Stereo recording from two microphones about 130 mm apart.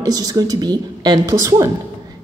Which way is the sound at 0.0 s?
30° right (ahead or behind).